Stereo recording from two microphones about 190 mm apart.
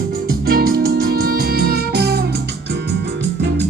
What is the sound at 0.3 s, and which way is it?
Music, 55° right (ahead or behind).